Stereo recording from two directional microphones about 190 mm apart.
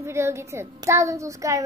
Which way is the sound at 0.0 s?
15° right (ahead or behind).